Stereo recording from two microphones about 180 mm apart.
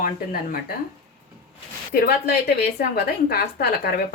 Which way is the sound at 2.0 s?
60° left (ahead or behind).